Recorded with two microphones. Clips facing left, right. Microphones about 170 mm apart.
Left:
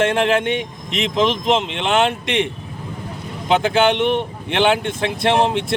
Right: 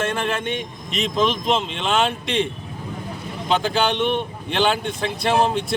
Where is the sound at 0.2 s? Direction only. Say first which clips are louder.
Left 7 dB; 75° left (ahead or behind).